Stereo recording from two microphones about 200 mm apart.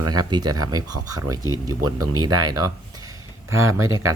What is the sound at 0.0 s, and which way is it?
Speech, 20° right (ahead or behind).